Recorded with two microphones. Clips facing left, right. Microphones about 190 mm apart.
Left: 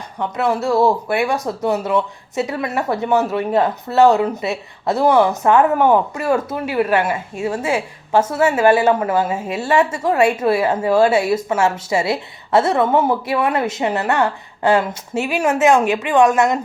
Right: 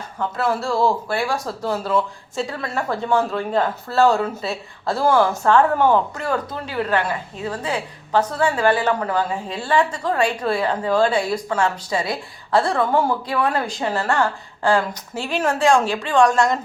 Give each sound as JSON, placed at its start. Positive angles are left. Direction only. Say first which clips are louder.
{"t": 0.2, "sound": "speech", "louder": "left 3 dB", "side_deg": 20}